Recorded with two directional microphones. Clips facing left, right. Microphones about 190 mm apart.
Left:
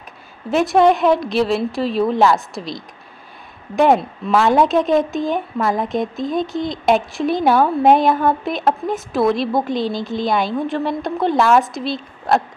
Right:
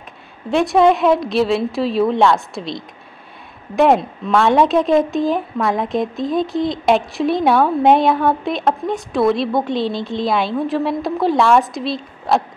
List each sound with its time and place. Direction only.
0.5 s speech: centre (ahead or behind)